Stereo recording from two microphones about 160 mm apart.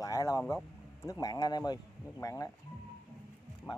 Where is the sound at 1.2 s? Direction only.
25° left (ahead or behind).